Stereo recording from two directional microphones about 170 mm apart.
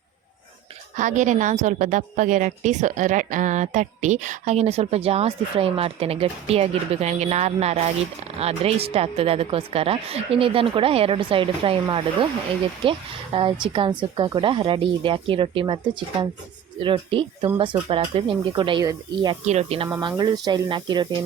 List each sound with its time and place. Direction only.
0.9 s a woman's voice: 45° right (ahead or behind); by 19.4 s 25° right (ahead or behind)
19.5 s a woman's voice: 40° right (ahead or behind)
19.9 s speech: 25° right (ahead or behind)